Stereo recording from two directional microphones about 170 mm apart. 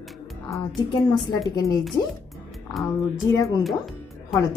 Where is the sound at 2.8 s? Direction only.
20° left (ahead or behind).